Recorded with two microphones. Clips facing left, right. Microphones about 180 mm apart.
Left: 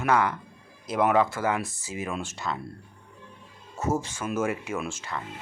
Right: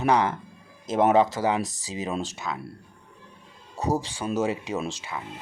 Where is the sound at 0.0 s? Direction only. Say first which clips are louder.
Right 2 dB; 20° right (ahead or behind).